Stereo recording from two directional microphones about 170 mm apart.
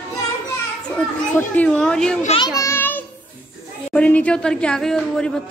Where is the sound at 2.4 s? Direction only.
20° left (ahead or behind).